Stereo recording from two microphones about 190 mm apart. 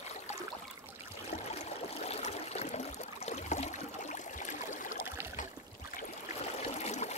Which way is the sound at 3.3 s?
35° left (ahead or behind).